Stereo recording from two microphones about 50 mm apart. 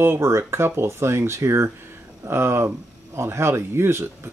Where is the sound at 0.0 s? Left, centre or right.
Right.